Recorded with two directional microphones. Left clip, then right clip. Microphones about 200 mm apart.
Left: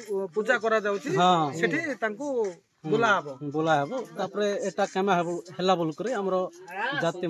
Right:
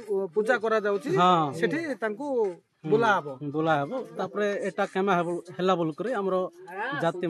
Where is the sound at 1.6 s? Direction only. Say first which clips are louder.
Left 1 dB; 55° right (ahead or behind).